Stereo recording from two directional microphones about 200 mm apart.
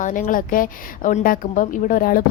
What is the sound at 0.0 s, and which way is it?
A woman's voice, 40° left (ahead or behind).